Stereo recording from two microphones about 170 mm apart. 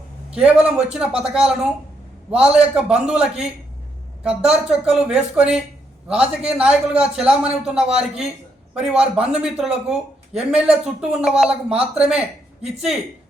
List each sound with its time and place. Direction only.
0.3 s a man's voice: 5° right (ahead or behind)